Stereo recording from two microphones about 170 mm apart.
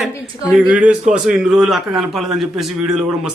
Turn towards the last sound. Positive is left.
turn(degrees=-5)  # may be behind; listen again after turning